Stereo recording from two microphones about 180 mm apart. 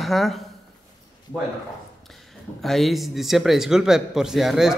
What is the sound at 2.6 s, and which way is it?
Speech, centre (ahead or behind).